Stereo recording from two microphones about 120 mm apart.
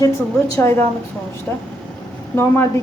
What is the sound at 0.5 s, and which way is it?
Speech, 20° left (ahead or behind).